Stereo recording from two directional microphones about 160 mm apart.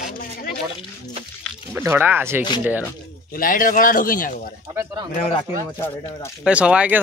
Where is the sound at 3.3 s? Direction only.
60° left (ahead or behind).